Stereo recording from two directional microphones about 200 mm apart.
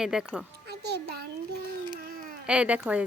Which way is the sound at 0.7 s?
55° right (ahead or behind).